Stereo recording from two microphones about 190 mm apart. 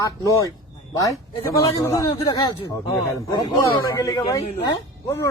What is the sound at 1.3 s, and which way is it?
A man's voice, 15° left (ahead or behind).